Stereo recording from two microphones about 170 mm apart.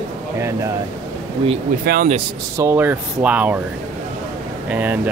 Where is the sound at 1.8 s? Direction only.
65° right (ahead or behind).